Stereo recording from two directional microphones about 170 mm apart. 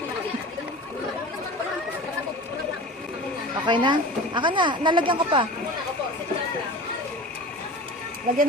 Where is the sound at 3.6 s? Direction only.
25° right (ahead or behind).